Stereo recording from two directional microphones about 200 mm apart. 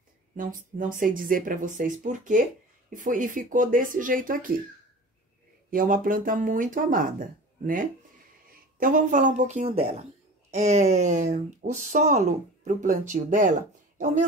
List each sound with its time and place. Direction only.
0.4 s speech: 40° right (ahead or behind)
5.7 s speech: 45° right (ahead or behind)